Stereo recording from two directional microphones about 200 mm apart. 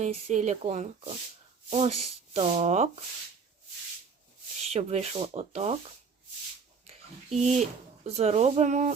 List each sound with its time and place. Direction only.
0.0 s speech: 35° right (ahead or behind)
4.7 s speech: 35° right (ahead or behind)
7.3 s speech: centre (ahead or behind)
7.6 s speech: 35° right (ahead or behind)